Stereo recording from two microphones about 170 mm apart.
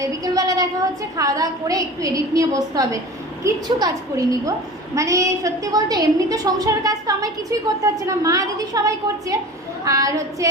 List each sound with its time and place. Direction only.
0.0 s a woman's voice: 20° right (ahead or behind)
9.8 s a woman's voice: 20° right (ahead or behind)